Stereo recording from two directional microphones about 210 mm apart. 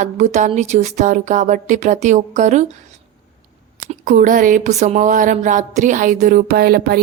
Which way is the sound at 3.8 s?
40° right (ahead or behind).